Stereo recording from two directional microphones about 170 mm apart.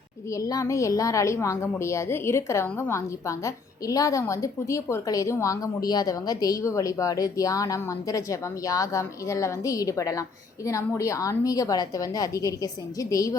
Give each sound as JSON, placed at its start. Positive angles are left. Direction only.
{"t": 0.3, "sound": "a woman's voice", "side_deg": 20}